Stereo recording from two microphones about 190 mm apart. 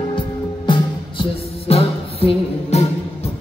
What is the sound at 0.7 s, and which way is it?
Music, 25° left (ahead or behind).